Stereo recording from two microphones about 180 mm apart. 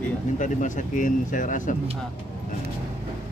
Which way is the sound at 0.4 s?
45° left (ahead or behind).